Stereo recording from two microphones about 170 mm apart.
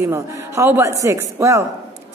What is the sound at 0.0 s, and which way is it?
A woman's voice, 15° right (ahead or behind).